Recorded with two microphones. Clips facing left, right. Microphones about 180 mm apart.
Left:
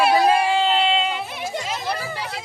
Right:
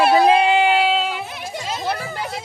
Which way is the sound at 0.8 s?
5° right (ahead or behind).